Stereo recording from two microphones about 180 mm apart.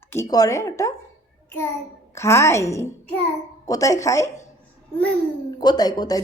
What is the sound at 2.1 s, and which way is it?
Speech, 15° left (ahead or behind).